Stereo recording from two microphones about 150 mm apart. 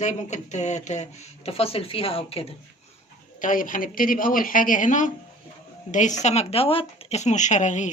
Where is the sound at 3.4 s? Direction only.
65° left (ahead or behind).